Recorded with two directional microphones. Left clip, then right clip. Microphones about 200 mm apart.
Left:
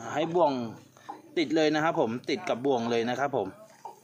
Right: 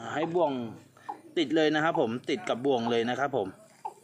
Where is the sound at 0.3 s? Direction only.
15° left (ahead or behind).